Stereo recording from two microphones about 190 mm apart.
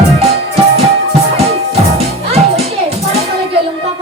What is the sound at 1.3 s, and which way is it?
Music, 35° right (ahead or behind).